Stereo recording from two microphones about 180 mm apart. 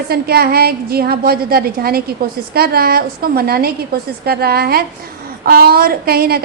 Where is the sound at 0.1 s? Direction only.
60° right (ahead or behind).